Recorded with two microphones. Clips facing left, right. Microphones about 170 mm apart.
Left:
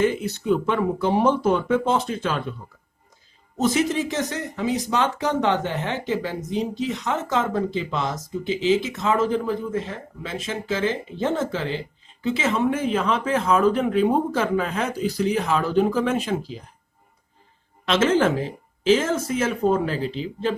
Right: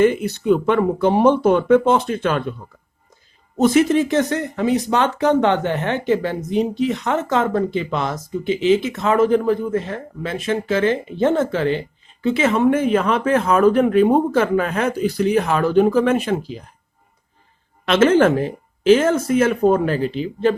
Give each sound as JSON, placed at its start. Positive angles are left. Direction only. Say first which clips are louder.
{"t": 0.0, "sound": "speech", "louder": "right 6 dB", "side_deg": -60}
{"t": 3.6, "sound": "speech", "louder": "right 7 dB", "side_deg": -60}
{"t": 17.8, "sound": "speech", "louder": "right 5 dB", "side_deg": -60}